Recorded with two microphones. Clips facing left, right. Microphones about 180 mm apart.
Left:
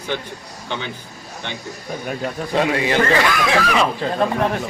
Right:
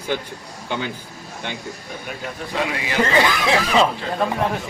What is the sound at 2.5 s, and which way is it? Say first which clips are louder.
Speech: left 5 dB; 35° left (ahead or behind).